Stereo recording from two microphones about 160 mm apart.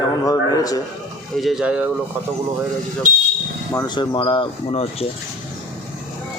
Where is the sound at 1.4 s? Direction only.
Centre (ahead or behind).